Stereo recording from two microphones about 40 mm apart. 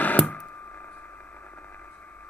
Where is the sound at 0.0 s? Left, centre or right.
Left.